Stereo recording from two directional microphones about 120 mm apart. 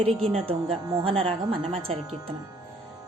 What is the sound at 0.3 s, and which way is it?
Speech, 55° right (ahead or behind).